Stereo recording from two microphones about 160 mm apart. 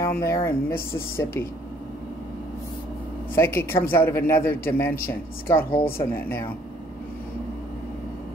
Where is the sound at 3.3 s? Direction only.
15° left (ahead or behind).